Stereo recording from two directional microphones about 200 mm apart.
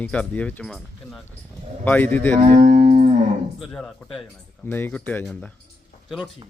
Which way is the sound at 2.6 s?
40° right (ahead or behind).